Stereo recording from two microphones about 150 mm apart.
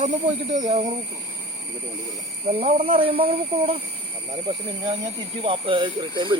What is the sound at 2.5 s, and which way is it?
Speech, 40° right (ahead or behind).